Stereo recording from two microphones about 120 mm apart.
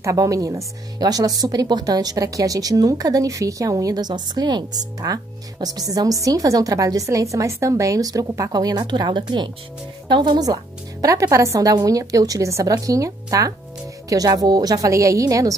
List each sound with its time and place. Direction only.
0.0 s a woman's voice: 30° right (ahead or behind)